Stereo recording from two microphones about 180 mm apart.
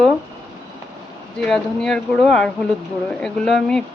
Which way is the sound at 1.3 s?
5° left (ahead or behind).